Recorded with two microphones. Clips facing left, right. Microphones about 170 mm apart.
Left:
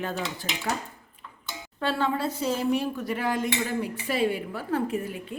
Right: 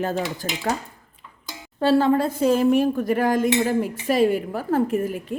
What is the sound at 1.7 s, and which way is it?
Speech, 35° right (ahead or behind).